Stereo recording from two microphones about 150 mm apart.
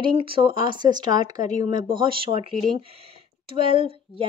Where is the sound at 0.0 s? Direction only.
35° right (ahead or behind).